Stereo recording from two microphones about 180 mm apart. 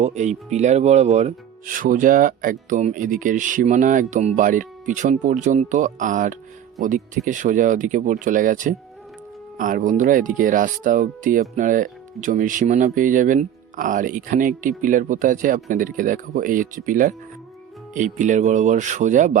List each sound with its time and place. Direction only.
0.0 s speech: 40° right (ahead or behind)